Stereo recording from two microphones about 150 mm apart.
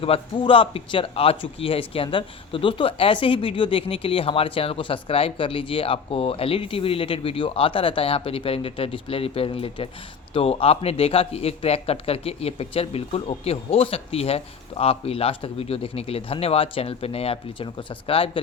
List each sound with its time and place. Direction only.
0.0 s speech: 35° left (ahead or behind)